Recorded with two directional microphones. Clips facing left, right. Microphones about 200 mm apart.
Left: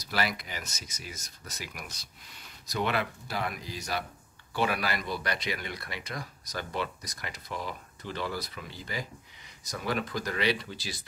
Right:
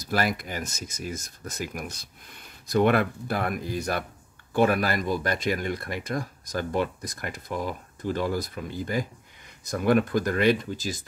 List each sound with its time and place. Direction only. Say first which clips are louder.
0.0 s speech: right 5 dB; 50° right (ahead or behind)